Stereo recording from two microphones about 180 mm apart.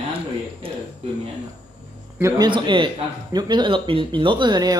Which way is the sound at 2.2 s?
25° right (ahead or behind).